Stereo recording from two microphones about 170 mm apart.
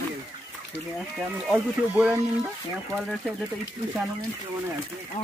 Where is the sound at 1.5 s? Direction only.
10° right (ahead or behind).